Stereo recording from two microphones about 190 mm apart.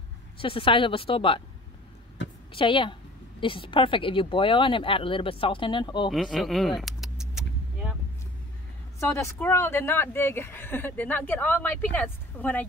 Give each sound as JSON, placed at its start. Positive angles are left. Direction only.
{"t": 0.4, "sound": "a woman's voice", "side_deg": 30}
{"t": 2.5, "sound": "a woman's voice", "side_deg": 25}
{"t": 6.0, "sound": "speech", "side_deg": 0}
{"t": 9.1, "sound": "speech", "side_deg": 15}